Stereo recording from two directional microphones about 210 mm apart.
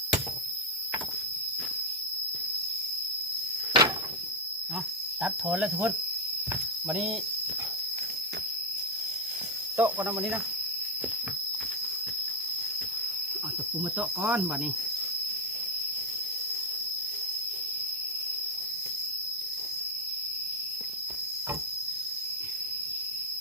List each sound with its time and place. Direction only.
3.7 s door: 20° right (ahead or behind)
5.2 s speech: 5° right (ahead or behind)
9.7 s speech: 10° right (ahead or behind)
14.0 s speech: 5° right (ahead or behind)